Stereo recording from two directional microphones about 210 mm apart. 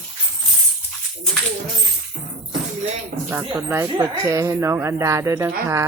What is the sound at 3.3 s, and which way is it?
Speech, 15° right (ahead or behind).